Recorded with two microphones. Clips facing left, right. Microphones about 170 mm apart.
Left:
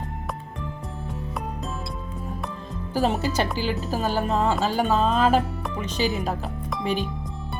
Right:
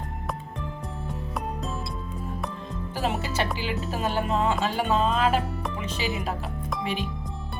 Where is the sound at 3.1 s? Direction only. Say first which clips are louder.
Left 5 dB; centre (ahead or behind).